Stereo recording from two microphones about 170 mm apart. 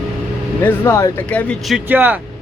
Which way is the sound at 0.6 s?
15° left (ahead or behind).